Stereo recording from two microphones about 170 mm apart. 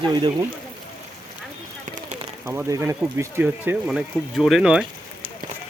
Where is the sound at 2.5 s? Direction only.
15° right (ahead or behind).